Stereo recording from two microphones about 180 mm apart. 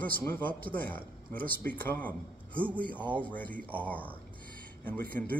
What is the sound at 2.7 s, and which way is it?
Speech, 10° left (ahead or behind).